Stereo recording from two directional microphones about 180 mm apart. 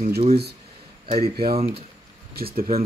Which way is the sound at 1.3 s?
55° right (ahead or behind).